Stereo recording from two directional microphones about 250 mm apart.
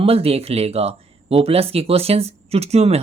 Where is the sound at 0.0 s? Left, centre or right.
Right.